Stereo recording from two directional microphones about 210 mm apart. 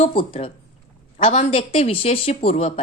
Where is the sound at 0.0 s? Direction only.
25° left (ahead or behind).